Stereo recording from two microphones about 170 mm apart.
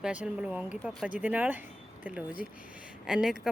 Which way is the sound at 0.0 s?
5° right (ahead or behind).